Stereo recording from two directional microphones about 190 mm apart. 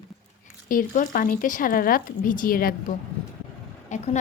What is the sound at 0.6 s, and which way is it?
A woman's voice, 45° left (ahead or behind).